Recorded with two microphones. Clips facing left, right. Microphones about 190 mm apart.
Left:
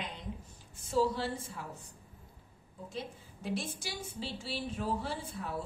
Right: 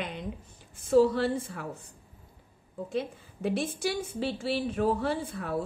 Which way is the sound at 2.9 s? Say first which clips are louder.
Right 9 dB; 60° right (ahead or behind).